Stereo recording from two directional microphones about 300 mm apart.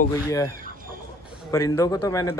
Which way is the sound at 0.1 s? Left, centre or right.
Centre.